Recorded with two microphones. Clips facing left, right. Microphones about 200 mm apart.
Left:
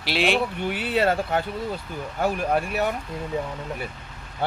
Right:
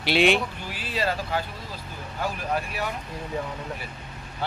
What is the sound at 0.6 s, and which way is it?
Speech, 60° left (ahead or behind).